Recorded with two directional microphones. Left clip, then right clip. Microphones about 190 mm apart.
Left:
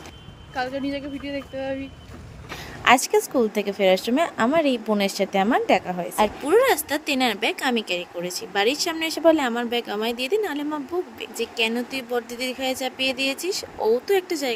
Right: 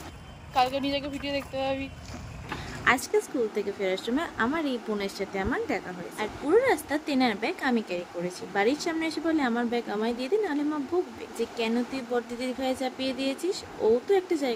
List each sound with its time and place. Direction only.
0.5 s speech: 10° left (ahead or behind)
2.8 s speech: 40° left (ahead or behind)